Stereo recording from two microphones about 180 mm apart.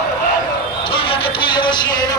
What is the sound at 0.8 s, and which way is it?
Music, 30° left (ahead or behind).